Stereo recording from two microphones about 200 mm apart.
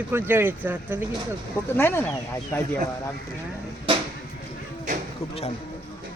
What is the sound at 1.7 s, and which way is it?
Speech, 10° left (ahead or behind).